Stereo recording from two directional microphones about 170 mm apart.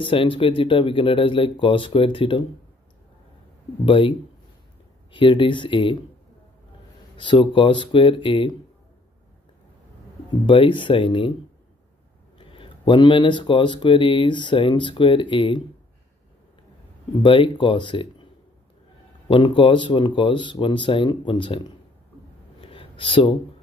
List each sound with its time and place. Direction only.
0.0 s speech: 30° left (ahead or behind)
3.8 s speech: 30° left (ahead or behind)
5.1 s speech: 30° left (ahead or behind)
7.2 s speech: 30° left (ahead or behind)
10.4 s speech: 30° left (ahead or behind)
12.4 s speech: 30° left (ahead or behind)
17.2 s speech: 30° left (ahead or behind)
19.2 s speech: 30° left (ahead or behind)
22.6 s a sound: 30° left (ahead or behind)